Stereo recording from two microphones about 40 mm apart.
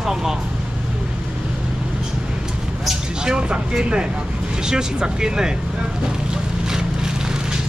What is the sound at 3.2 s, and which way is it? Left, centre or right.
Speech, right.